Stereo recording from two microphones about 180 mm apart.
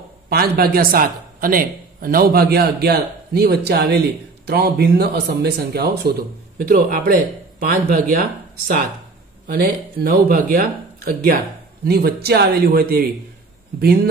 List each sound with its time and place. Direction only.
0.3 s a man's voice: 55° right (ahead or behind)